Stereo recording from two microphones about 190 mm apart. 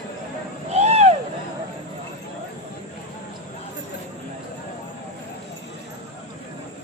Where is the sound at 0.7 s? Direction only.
35° right (ahead or behind).